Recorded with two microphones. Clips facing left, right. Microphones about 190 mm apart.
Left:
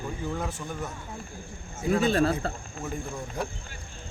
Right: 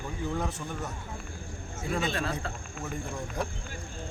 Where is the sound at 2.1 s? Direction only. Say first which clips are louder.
Left 8 dB; 40° left (ahead or behind).